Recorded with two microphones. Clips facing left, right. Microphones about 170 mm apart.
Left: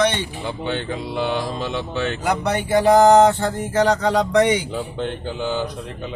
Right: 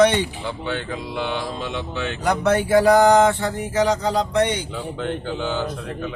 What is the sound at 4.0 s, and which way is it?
Speech, 90° left.